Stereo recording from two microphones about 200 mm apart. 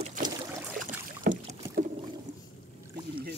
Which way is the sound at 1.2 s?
50° right (ahead or behind).